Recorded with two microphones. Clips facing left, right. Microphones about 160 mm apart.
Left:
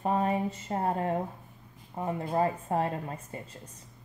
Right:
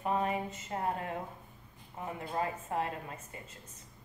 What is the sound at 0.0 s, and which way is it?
A woman's voice, 35° left (ahead or behind).